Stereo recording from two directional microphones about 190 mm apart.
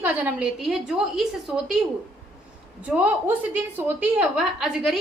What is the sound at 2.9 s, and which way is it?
A woman's voice, 5° right (ahead or behind).